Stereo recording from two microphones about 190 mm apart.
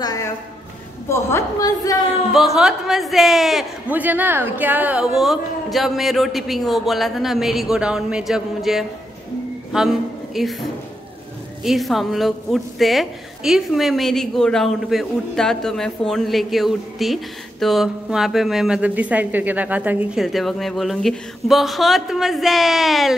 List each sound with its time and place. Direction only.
0.0 s a sound: 20° left (ahead or behind)
1.0 s a woman's voice: 15° left (ahead or behind)
2.3 s a woman's voice: centre (ahead or behind)
11.6 s a woman's voice: centre (ahead or behind)